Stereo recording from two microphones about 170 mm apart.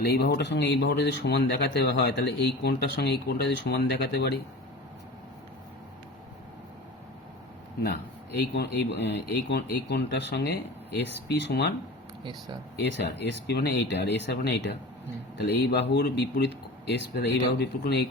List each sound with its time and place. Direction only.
0.0 s speech: 70° left (ahead or behind)
8.4 s speech: 85° left
12.2 s speech: 25° right (ahead or behind)
12.8 s speech: 90° left